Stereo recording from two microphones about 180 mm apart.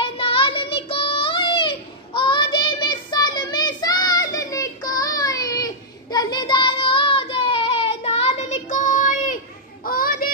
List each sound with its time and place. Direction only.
0.0 s child singing: 30° left (ahead or behind); by 10.3 s 55° left (ahead or behind)